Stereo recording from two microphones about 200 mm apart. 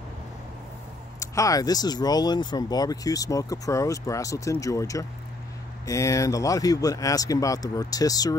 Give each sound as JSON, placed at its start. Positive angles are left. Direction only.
{"t": 1.2, "sound": "speech", "side_deg": 15}